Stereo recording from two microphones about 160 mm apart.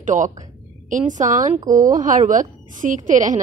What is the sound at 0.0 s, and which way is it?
A woman's voice, 50° right (ahead or behind).